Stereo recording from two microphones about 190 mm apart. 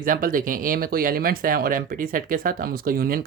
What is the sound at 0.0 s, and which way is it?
Speech, 45° right (ahead or behind).